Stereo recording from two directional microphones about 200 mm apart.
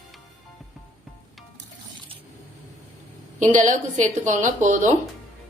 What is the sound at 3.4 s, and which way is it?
Speech, 40° right (ahead or behind).